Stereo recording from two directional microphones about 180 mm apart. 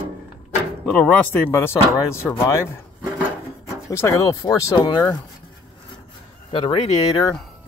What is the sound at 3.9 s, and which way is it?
Speech, 15° left (ahead or behind).